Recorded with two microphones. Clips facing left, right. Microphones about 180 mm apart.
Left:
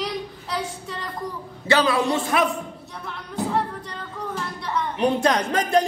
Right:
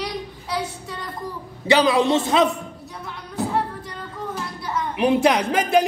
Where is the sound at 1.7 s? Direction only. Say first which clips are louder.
Right 3 dB; 15° right (ahead or behind).